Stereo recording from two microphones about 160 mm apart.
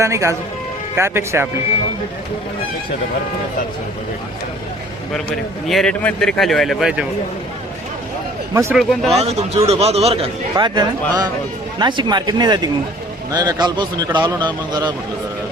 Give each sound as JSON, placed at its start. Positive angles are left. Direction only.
{"t": 0.0, "sound": "speech", "side_deg": -20}
{"t": 5.6, "sound": "a man's voice", "side_deg": 5}
{"t": 8.7, "sound": "a man's voice", "side_deg": 0}
{"t": 9.1, "sound": "a man's voice", "side_deg": -40}
{"t": 10.5, "sound": "a man's voice", "side_deg": -25}